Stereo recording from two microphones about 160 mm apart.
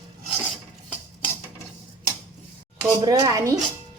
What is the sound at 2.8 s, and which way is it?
Speech, 20° right (ahead or behind).